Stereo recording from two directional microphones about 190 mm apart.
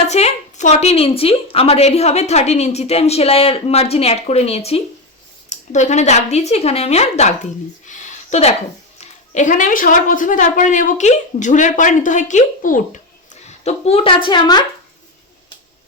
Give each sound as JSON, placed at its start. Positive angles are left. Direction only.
{"t": 0.1, "sound": "a woman's voice", "side_deg": 35}
{"t": 7.9, "sound": "a sound", "side_deg": 40}
{"t": 9.0, "sound": "a woman's voice", "side_deg": 40}
{"t": 13.7, "sound": "speech", "side_deg": 35}